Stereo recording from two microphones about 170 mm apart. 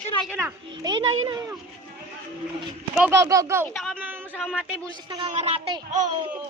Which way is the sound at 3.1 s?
20° right (ahead or behind).